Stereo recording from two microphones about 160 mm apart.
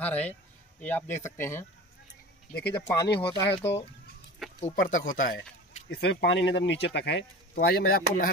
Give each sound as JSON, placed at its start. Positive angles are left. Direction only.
{"t": 0.0, "sound": "speech", "side_deg": 10}
{"t": 2.7, "sound": "speech", "side_deg": 20}
{"t": 3.2, "sound": "speech", "side_deg": 30}
{"t": 4.6, "sound": "speech", "side_deg": 50}